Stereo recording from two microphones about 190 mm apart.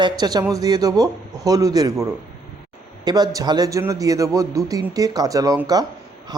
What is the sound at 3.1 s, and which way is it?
Speech, 20° right (ahead or behind).